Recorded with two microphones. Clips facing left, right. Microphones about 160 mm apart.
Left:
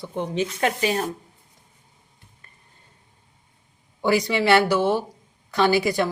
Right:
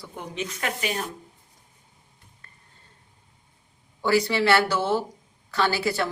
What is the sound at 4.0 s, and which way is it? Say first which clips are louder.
Speech: left 1 dB; 15° left (ahead or behind).